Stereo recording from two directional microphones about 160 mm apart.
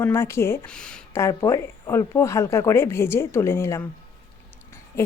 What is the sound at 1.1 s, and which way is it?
Speech, 20° left (ahead or behind).